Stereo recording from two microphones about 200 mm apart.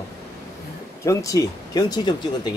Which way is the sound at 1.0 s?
15° left (ahead or behind).